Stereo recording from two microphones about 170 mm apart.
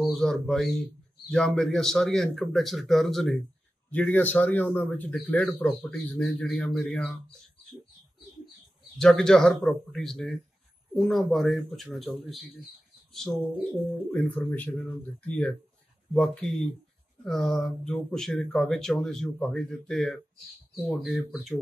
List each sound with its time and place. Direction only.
0.0 s speech: centre (ahead or behind)
8.9 s speech: 5° left (ahead or behind)
13.7 s speech: 10° left (ahead or behind)